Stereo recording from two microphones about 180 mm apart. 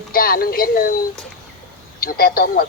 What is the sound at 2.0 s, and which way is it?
Speech, 55° left (ahead or behind).